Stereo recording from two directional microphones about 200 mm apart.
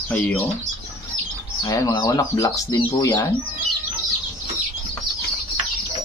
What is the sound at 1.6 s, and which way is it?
Speech, 15° left (ahead or behind).